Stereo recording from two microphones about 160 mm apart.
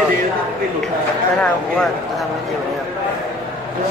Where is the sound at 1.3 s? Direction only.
5° left (ahead or behind).